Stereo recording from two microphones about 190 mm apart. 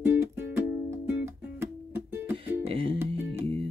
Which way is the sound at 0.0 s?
10° right (ahead or behind).